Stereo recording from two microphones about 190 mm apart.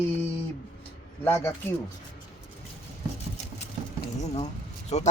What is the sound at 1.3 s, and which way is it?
Speech, 15° left (ahead or behind).